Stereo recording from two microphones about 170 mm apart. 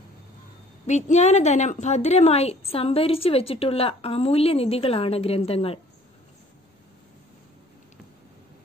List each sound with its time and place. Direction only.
0.8 s a woman's voice: 45° left (ahead or behind)